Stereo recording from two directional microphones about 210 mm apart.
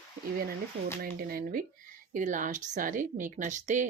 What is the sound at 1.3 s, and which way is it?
A woman's voice, 45° right (ahead or behind).